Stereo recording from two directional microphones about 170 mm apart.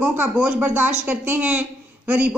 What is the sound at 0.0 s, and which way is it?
Speech, 10° right (ahead or behind).